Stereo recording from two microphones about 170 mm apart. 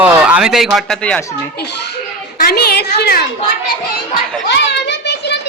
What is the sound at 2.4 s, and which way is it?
Speech, 65° left (ahead or behind).